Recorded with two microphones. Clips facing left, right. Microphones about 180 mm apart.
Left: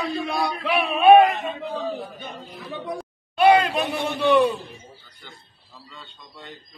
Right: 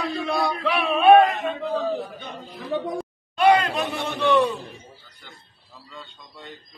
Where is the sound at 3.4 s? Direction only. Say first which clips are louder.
Left 2 dB; 15° left (ahead or behind).